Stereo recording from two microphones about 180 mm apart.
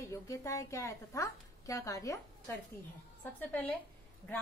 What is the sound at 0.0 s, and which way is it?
A woman's voice, 15° left (ahead or behind).